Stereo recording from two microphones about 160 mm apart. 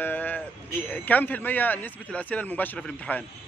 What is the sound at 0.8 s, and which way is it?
Speech, 10° left (ahead or behind).